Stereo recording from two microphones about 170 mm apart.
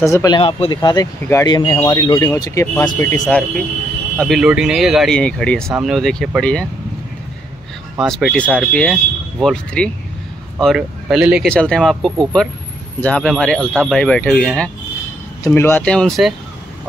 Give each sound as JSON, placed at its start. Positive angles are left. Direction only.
{"t": 0.0, "sound": "speech", "side_deg": 20}
{"t": 0.4, "sound": "speech", "side_deg": 30}
{"t": 4.2, "sound": "speech", "side_deg": 0}
{"t": 8.0, "sound": "speech", "side_deg": 0}